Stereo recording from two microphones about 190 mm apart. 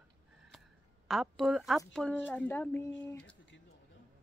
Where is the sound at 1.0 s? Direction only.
Centre (ahead or behind).